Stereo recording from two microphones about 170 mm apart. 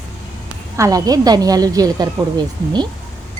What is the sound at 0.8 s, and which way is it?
A woman's voice, 20° right (ahead or behind).